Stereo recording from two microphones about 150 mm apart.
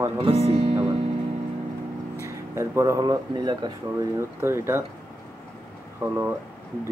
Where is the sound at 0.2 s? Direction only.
40° right (ahead or behind).